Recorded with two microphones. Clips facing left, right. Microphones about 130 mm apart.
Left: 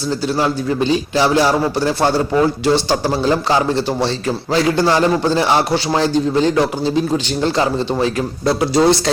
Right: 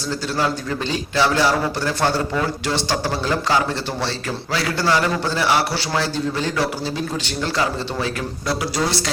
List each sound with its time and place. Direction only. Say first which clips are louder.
0.3 s a man's voice: left 4 dB; 20° left (ahead or behind)
4.9 s a man's voice: left 5 dB; 30° left (ahead or behind)